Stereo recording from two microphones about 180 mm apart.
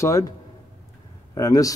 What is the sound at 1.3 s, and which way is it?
Speech, 20° left (ahead or behind).